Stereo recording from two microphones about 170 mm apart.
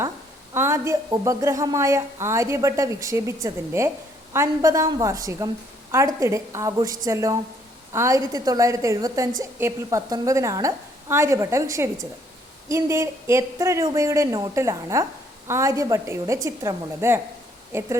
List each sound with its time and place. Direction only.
0.5 s a woman's voice: 15° right (ahead or behind)